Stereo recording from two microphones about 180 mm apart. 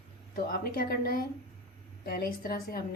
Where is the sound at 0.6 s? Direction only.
55° left (ahead or behind).